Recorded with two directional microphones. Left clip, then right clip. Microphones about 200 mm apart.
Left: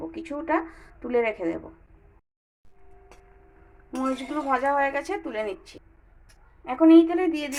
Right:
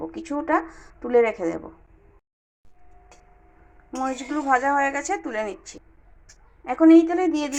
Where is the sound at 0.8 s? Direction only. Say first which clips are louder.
Right 5 dB; 10° right (ahead or behind).